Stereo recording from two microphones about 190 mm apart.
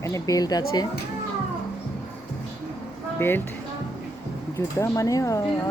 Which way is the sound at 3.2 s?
10° left (ahead or behind).